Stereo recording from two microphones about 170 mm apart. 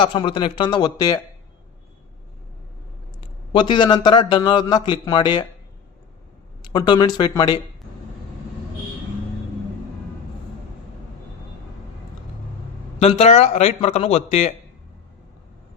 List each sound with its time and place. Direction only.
0.0 s a man's voice: 30° left (ahead or behind)
3.2 s a man's voice: 30° left (ahead or behind)
6.6 s a man's voice: 25° left (ahead or behind)
13.0 s speech: 35° left (ahead or behind)